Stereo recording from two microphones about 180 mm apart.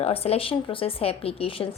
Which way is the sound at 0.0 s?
35° left (ahead or behind).